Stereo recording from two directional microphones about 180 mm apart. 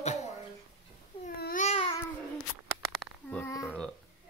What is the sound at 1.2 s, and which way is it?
Babbling, 55° left (ahead or behind).